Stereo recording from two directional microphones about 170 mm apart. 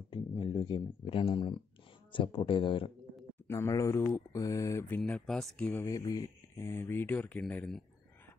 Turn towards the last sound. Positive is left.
turn(degrees=5)  # may be behind; listen again after turning